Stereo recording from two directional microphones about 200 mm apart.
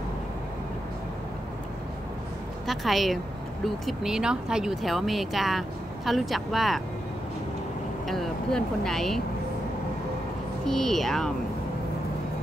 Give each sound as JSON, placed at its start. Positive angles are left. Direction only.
{"t": 2.6, "sound": "speech", "side_deg": 0}
{"t": 8.1, "sound": "speech", "side_deg": 0}
{"t": 10.6, "sound": "speech", "side_deg": 0}